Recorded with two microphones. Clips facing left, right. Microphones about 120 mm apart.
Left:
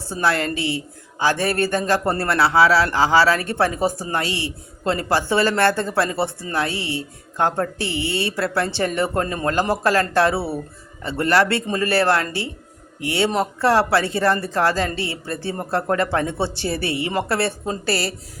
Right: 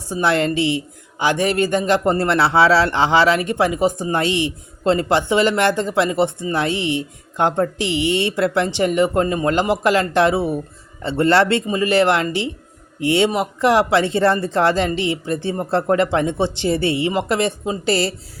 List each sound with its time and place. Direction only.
0.0 s a man's voice: 20° right (ahead or behind)